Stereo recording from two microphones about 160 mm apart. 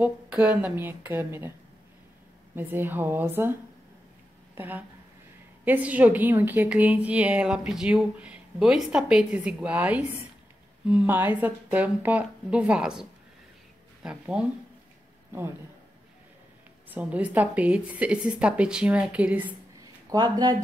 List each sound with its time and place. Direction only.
0.0 s a woman's voice: 10° right (ahead or behind)
2.5 s a woman's voice: 10° right (ahead or behind)
4.6 s a woman's voice: 10° right (ahead or behind)
14.0 s a woman's voice: 5° right (ahead or behind)
16.9 s a woman's voice: 10° right (ahead or behind)
19.8 s a sound: 25° right (ahead or behind)